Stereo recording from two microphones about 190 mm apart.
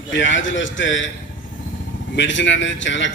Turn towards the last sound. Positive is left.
turn(degrees=75)  # may be behind; listen again after turning